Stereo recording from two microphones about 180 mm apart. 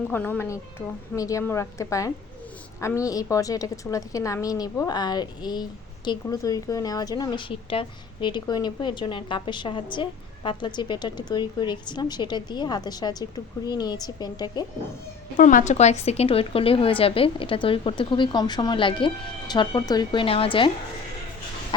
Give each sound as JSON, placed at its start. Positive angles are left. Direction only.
{"t": 0.1, "sound": "a woman's voice", "side_deg": 10}
{"t": 15.4, "sound": "a woman's voice", "side_deg": 45}